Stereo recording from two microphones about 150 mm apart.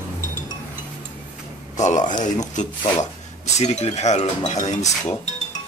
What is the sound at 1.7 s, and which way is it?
A man's voice, 55° left (ahead or behind).